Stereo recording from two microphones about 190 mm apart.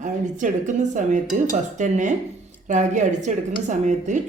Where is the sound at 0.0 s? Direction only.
40° right (ahead or behind).